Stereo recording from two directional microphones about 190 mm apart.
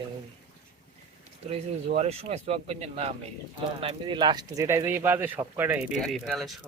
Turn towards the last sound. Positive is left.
turn(degrees=0)  # may be behind; listen again after turning